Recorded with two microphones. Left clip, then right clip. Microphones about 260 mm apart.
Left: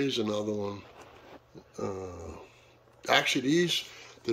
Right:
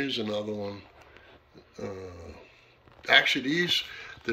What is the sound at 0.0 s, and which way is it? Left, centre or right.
Speech, centre.